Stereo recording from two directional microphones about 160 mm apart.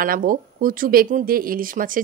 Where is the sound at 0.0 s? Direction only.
60° right (ahead or behind).